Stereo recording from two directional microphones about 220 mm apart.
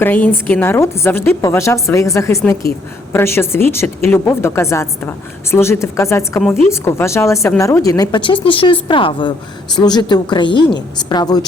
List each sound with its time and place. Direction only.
0.0 s a woman's voice: 10° left (ahead or behind)